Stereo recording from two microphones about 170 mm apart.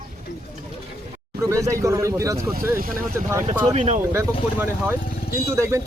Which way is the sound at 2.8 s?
60° right (ahead or behind).